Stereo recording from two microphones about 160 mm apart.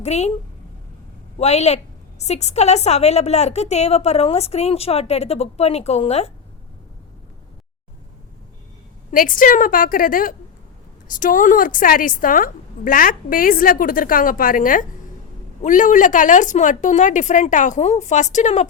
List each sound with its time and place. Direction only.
0.0 s speech: 45° left (ahead or behind)
1.4 s a woman's voice: 45° left (ahead or behind)
9.1 s a woman's voice: 60° left (ahead or behind)